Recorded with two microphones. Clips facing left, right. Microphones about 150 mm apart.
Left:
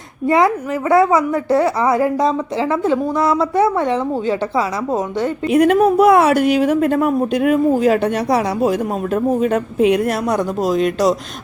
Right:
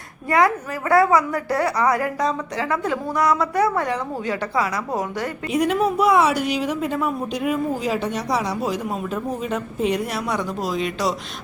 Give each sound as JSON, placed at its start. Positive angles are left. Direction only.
{"t": 0.3, "sound": "a woman's voice", "side_deg": 20}
{"t": 5.5, "sound": "a woman's voice", "side_deg": 55}